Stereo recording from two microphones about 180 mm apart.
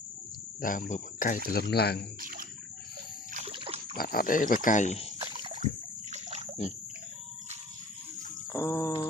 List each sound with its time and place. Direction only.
0.6 s speech: 45° left (ahead or behind)
1.5 s speech: 60° left (ahead or behind)
2.2 s bathtub: 50° right (ahead or behind)
3.4 s pig: 30° right (ahead or behind)
3.9 s speech: 55° left (ahead or behind)
5.2 s a sound: 25° right (ahead or behind)
5.5 s water: 40° right (ahead or behind)
8.5 s a sound: 15° left (ahead or behind)